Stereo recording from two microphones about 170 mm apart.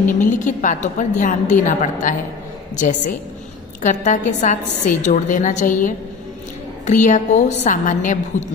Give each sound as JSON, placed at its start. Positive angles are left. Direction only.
{"t": 0.2, "sound": "a woman's voice", "side_deg": 50}